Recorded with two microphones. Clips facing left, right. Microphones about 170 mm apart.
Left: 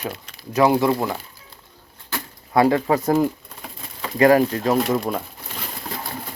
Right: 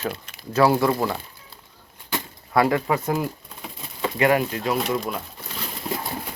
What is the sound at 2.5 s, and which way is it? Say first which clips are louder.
Speech: left 3 dB; 25° left (ahead or behind).